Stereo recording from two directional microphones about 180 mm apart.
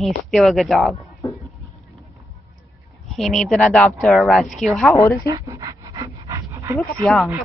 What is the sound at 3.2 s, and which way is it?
Speech, centre (ahead or behind).